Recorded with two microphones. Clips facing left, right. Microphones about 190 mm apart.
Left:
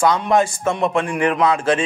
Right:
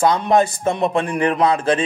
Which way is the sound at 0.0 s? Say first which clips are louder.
Right 1 dB; 35° right (ahead or behind).